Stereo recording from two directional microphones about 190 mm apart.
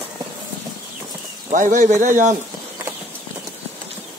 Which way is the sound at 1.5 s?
45° right (ahead or behind).